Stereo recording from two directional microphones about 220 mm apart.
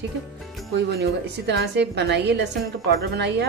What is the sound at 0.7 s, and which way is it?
Speech, 50° right (ahead or behind).